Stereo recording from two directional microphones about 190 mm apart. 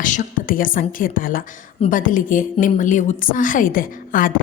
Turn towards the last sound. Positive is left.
turn(degrees=45)  # may be behind; listen again after turning